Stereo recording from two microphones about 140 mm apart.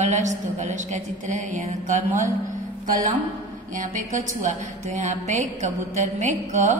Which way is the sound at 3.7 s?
75° right (ahead or behind).